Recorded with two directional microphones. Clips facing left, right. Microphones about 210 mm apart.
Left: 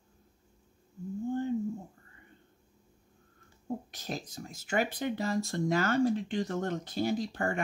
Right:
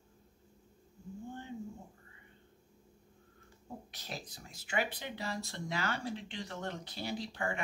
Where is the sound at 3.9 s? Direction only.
45° left (ahead or behind).